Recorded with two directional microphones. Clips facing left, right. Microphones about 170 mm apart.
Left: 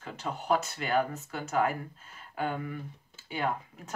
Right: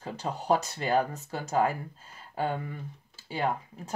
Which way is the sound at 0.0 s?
35° right (ahead or behind).